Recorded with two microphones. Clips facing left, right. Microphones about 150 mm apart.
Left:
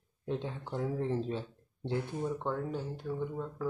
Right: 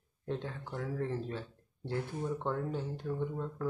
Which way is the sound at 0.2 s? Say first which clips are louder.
Left 2 dB; 20° left (ahead or behind).